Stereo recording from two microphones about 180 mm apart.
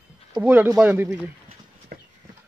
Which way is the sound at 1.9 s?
55° right (ahead or behind).